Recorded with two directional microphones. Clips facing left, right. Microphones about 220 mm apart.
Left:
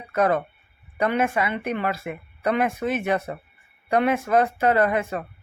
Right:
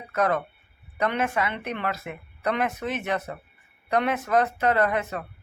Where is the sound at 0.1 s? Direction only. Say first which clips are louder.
Left 3 dB; 10° left (ahead or behind).